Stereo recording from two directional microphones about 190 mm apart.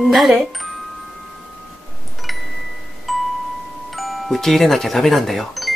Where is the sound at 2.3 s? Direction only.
Centre (ahead or behind).